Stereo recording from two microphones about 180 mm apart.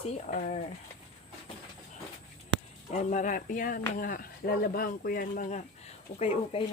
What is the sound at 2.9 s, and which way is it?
Speech, 45° left (ahead or behind).